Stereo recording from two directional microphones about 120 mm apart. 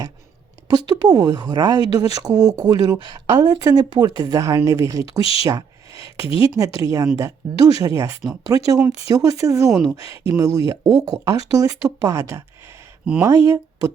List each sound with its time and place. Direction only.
0.9 s speech: 35° right (ahead or behind)
5.4 s a sound: 30° right (ahead or behind)
6.1 s speech: 50° left (ahead or behind)
6.6 s speech: 30° right (ahead or behind)